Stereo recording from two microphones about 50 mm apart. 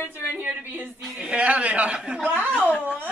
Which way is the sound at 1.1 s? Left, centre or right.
Right.